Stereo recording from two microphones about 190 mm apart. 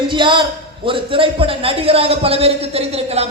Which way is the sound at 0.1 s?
25° right (ahead or behind).